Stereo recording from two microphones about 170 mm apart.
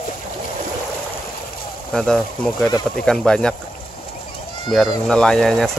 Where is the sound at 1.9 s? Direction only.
5° left (ahead or behind).